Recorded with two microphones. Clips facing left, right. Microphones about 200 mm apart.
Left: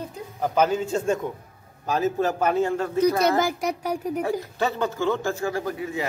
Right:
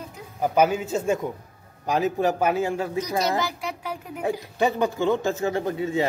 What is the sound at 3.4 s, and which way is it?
Speech, 45° left (ahead or behind).